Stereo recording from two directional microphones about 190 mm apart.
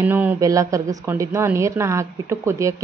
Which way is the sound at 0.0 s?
10° right (ahead or behind).